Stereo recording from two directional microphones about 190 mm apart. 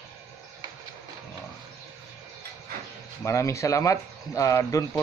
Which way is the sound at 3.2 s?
15° left (ahead or behind).